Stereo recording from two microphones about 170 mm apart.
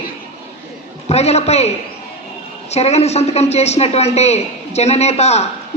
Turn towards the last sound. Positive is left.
turn(degrees=40)  # may be behind; listen again after turning